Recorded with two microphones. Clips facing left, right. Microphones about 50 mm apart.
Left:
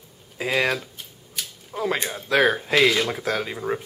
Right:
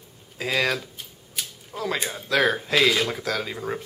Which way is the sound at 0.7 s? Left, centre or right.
Centre.